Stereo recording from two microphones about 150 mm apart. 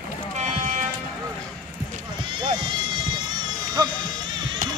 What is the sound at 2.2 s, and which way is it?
Music, 30° right (ahead or behind).